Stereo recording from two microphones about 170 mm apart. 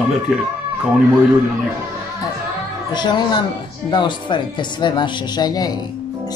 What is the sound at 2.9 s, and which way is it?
Speech, 25° left (ahead or behind).